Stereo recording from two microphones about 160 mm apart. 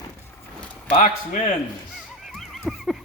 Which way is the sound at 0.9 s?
55° left (ahead or behind).